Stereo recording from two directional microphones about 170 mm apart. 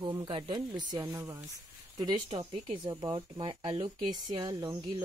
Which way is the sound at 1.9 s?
25° right (ahead or behind).